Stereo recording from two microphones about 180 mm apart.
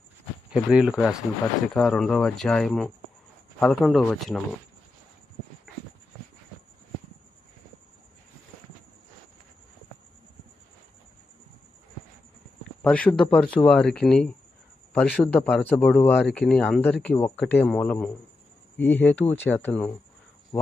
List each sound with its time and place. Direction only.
0.5 s speech: 5° right (ahead or behind)
12.8 s speech: 5° left (ahead or behind)